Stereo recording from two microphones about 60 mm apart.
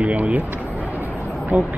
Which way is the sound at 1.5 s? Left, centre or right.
Centre.